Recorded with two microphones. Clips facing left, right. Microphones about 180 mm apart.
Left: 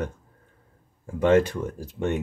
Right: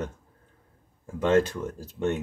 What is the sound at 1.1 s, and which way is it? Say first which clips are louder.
Speech: left 3 dB; 15° left (ahead or behind).